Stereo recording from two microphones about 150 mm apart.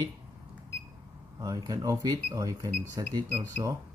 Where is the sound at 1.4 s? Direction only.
25° right (ahead or behind).